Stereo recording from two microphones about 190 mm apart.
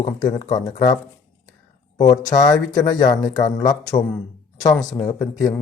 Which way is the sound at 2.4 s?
20° left (ahead or behind).